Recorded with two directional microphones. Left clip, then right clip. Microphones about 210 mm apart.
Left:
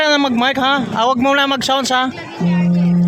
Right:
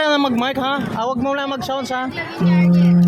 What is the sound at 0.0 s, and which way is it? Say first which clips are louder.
Speech: left 3 dB; 15° left (ahead or behind).